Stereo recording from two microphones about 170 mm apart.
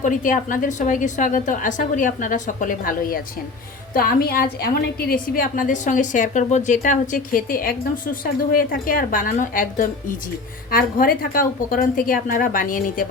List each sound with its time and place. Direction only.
0.0 s a woman's voice: 50° left (ahead or behind)